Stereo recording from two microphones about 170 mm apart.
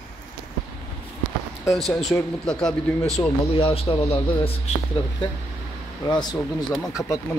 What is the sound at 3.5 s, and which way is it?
Speech, 35° left (ahead or behind).